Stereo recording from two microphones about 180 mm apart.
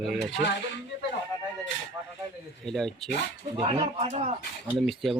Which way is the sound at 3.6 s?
35° right (ahead or behind).